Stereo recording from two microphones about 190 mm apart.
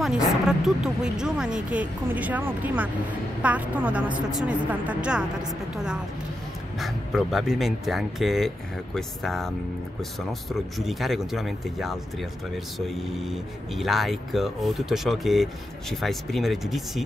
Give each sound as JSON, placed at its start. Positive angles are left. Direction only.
{"t": 0.5, "sound": "a woman's voice", "side_deg": 0}
{"t": 6.8, "sound": "speech", "side_deg": 0}
{"t": 10.5, "sound": "speech", "side_deg": 0}